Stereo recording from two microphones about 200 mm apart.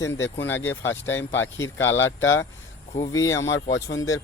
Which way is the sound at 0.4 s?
10° left (ahead or behind).